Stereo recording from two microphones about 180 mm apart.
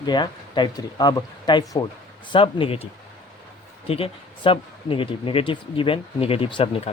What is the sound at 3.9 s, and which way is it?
Speech, 30° left (ahead or behind).